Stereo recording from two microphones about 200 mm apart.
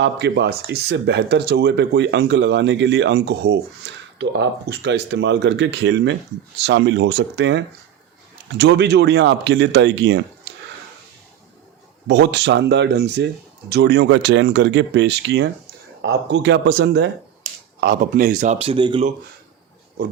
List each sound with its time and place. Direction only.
0.0 s speech: 60° right (ahead or behind)
12.0 s speech: 55° right (ahead or behind)
17.7 s speech: 45° right (ahead or behind); by 19.0 s 25° right (ahead or behind)